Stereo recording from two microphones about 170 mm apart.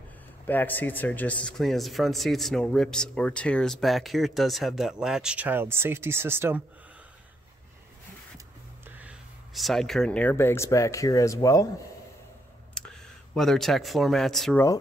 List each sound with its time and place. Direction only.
0.5 s speech: 10° left (ahead or behind); by 6.6 s 15° right (ahead or behind)
8.8 s speech: 10° right (ahead or behind); by 11.6 s 20° left (ahead or behind)
12.7 s speech: 5° left (ahead or behind)